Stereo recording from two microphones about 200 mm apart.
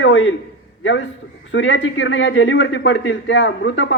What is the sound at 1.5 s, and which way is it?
A man's voice, 70° left (ahead or behind).